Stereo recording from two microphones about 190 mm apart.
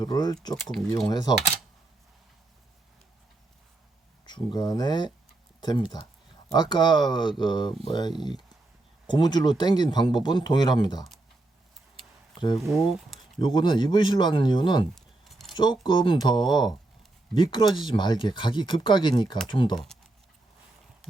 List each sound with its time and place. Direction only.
0.0 s speech: 20° left (ahead or behind)
0.5 s speech: centre (ahead or behind)
1.0 s speech: 20° left (ahead or behind)
4.4 s speech: 20° left (ahead or behind)
12.5 s speech: centre (ahead or behind)
13.4 s speech: 25° left (ahead or behind)
14.9 s keys jangling: centre (ahead or behind)
15.5 s speech: 25° left (ahead or behind)